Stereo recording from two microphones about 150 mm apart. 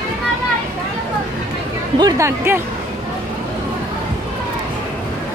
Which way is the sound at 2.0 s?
20° right (ahead or behind).